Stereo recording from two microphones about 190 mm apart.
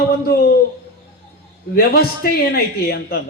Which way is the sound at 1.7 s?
50° left (ahead or behind).